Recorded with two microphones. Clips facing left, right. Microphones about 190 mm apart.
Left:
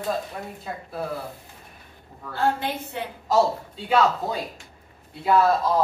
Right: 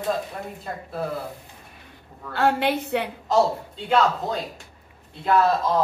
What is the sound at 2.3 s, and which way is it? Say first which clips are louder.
Speech: right 4 dB; 80° right.